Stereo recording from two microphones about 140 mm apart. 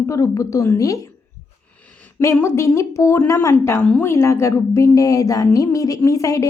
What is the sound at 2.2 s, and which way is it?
A woman's voice, 20° left (ahead or behind).